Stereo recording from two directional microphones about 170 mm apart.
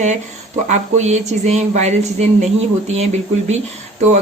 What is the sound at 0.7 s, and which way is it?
Speech, 45° right (ahead or behind).